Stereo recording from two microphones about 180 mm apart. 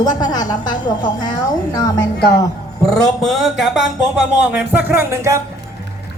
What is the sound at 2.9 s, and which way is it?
Speech, centre (ahead or behind).